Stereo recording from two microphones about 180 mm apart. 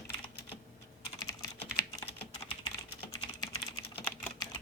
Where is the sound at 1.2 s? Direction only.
20° left (ahead or behind).